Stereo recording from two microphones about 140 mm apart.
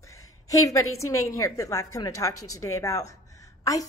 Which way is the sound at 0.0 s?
25° left (ahead or behind).